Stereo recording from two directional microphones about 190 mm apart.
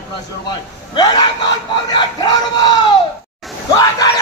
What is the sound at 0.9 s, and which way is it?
Speech, 20° left (ahead or behind).